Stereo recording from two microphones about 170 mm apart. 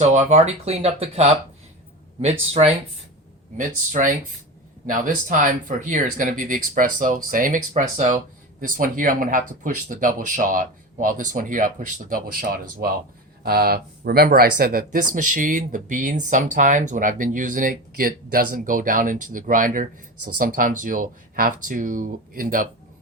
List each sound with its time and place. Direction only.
0.0 s speech: 45° right (ahead or behind)
3.6 s speech: 50° right (ahead or behind)